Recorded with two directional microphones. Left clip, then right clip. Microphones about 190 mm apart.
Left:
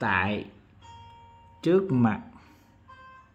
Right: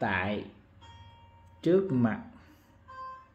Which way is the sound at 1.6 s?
30° left (ahead or behind).